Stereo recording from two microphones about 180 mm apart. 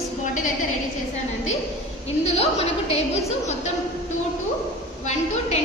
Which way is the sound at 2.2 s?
35° left (ahead or behind).